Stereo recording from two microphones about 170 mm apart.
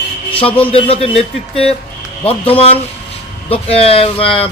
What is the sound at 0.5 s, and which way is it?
Speech, 35° left (ahead or behind).